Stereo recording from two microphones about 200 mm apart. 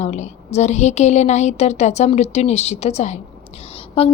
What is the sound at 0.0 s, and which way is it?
A woman's voice, 35° left (ahead or behind).